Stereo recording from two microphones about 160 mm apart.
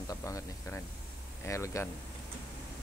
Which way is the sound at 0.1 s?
20° left (ahead or behind).